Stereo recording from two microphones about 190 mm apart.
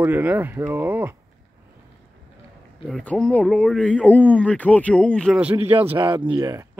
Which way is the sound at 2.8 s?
5° left (ahead or behind).